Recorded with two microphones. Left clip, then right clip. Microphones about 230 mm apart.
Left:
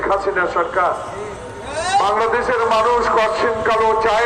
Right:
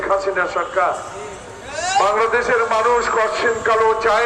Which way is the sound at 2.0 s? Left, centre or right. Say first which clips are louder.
Right 3 dB; right.